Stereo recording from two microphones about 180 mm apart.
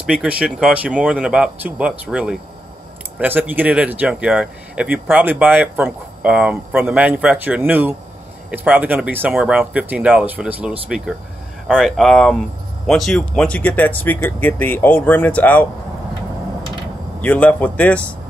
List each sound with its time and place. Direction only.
0.0 s speech: 5° right (ahead or behind)
17.2 s speech: 10° left (ahead or behind)